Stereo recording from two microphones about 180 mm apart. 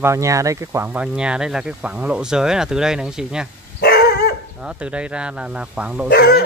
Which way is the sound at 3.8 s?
60° left (ahead or behind).